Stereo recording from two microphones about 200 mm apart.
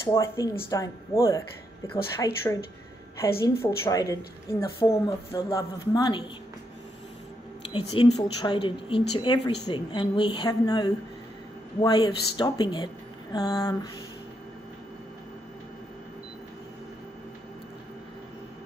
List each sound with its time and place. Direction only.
0.0 s a woman's voice: 15° left (ahead or behind)
7.7 s a woman's voice: 25° left (ahead or behind)